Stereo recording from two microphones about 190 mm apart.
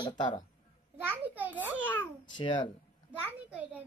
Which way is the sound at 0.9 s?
10° right (ahead or behind).